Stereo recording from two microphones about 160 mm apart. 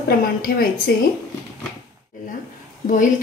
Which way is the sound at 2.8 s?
55° left (ahead or behind).